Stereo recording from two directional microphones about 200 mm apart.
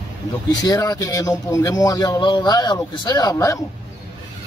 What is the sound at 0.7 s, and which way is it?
Speech, 20° left (ahead or behind).